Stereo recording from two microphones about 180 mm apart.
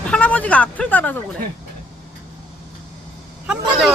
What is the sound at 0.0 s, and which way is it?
Speech, 5° left (ahead or behind).